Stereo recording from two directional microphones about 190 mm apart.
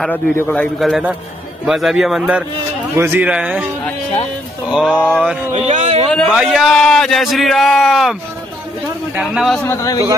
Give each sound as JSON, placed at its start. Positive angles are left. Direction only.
{"t": 0.0, "sound": "a man's voice", "side_deg": 10}
{"t": 4.6, "sound": "a man's voice", "side_deg": -5}
{"t": 4.9, "sound": "a man's voice", "side_deg": 5}
{"t": 5.2, "sound": "speech", "side_deg": -5}
{"t": 5.5, "sound": "speech", "side_deg": -35}
{"t": 6.0, "sound": "a man's voice", "side_deg": 0}
{"t": 9.7, "sound": "a man's voice", "side_deg": 15}